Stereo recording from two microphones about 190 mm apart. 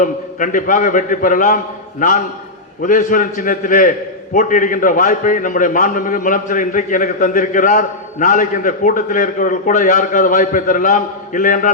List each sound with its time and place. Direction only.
0.0 s a man's voice: 45° left (ahead or behind)